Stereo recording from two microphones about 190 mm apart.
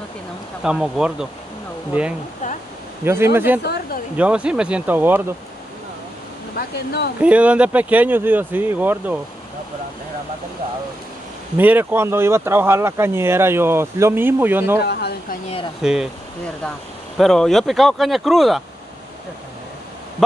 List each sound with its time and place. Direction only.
0.7 s speech: 5° right (ahead or behind)
3.0 s speech: 10° right (ahead or behind)
3.6 s a sound: 55° left (ahead or behind)
4.2 s speech: 5° right (ahead or behind)
6.5 s speech: 60° left (ahead or behind)
7.2 s speech: 5° right (ahead or behind)
11.5 s speech: 10° right (ahead or behind)
14.8 s speech: 55° left (ahead or behind)
15.8 s speech: 5° right (ahead or behind)
17.2 s speech: centre (ahead or behind)
20.2 s speech: centre (ahead or behind)